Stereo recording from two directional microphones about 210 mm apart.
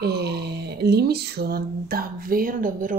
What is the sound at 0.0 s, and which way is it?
Speech, 50° right (ahead or behind).